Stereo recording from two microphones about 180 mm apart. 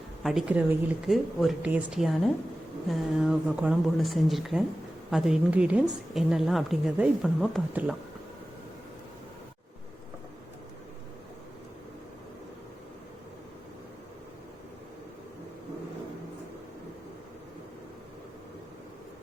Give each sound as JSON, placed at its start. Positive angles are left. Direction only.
{"t": 0.2, "sound": "a woman's voice", "side_deg": 0}